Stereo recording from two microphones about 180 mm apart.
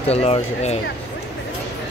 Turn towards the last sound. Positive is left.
turn(degrees=35)  # may be behind; listen again after turning